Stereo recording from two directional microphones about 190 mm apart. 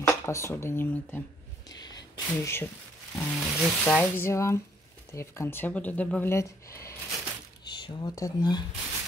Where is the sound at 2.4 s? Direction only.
15° left (ahead or behind).